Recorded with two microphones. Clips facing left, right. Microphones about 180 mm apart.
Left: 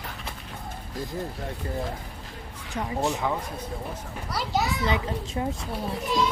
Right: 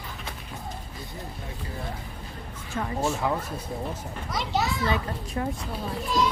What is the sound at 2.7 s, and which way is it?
Speech, 15° left (ahead or behind).